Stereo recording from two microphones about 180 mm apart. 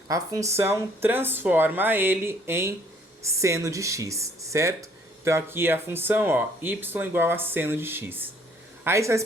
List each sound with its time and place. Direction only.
0.1 s speech: 20° right (ahead or behind)